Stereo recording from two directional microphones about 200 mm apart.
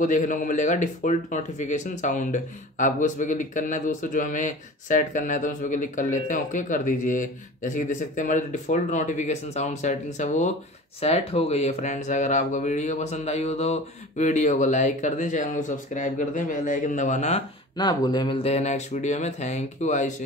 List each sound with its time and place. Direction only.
0.0 s speech: 40° left (ahead or behind)
17.7 s speech: 20° left (ahead or behind); by 20.1 s 35° left (ahead or behind)